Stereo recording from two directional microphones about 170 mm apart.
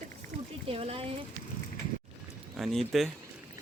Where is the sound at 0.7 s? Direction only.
35° right (ahead or behind).